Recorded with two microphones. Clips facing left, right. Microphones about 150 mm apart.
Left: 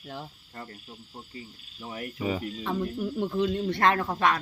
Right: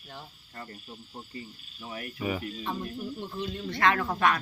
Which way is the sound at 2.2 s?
20° left (ahead or behind).